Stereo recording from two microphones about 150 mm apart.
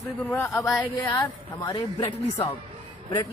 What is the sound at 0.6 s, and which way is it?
Speech, 20° left (ahead or behind).